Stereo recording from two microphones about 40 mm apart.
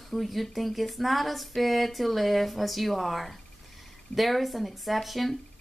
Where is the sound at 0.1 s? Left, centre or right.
Centre.